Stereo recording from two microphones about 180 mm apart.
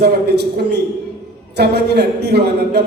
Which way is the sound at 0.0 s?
65° right (ahead or behind).